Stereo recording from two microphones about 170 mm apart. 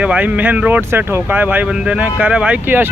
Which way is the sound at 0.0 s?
10° right (ahead or behind).